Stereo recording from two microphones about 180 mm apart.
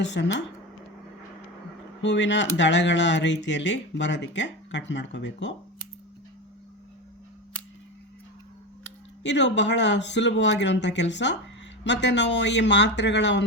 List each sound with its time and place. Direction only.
0.0 s speech: 80° left
2.0 s speech: 80° left
9.2 s speech: 75° left (ahead or behind)